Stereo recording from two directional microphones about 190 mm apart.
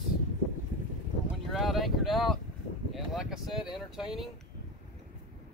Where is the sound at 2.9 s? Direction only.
Centre (ahead or behind).